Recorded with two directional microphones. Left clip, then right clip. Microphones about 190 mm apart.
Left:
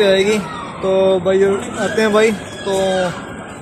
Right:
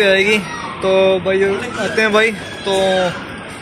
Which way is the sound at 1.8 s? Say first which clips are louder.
Even; 10° left (ahead or behind).